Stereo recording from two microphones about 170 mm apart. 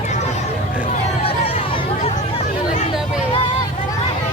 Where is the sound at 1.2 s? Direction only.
35° left (ahead or behind).